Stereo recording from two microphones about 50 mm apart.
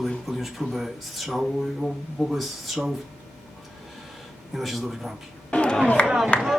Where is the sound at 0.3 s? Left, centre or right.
Centre.